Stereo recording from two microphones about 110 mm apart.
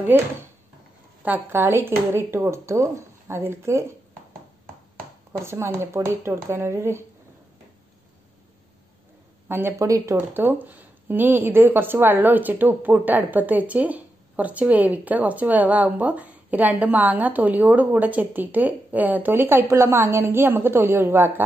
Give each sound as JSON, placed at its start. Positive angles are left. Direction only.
{"t": 0.1, "sound": "speech", "side_deg": -15}
{"t": 5.4, "sound": "speech", "side_deg": -25}
{"t": 9.5, "sound": "speech", "side_deg": -20}
{"t": 10.1, "sound": "speech", "side_deg": -15}